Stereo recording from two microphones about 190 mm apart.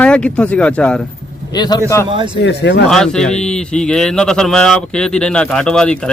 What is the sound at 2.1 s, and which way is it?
Speech, 25° right (ahead or behind).